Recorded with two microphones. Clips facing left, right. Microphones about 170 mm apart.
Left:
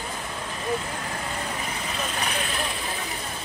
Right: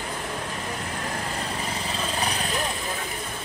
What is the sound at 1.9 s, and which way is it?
Vehicle, 35° right (ahead or behind).